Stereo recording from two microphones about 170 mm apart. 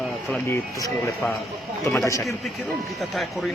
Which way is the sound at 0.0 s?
Centre (ahead or behind).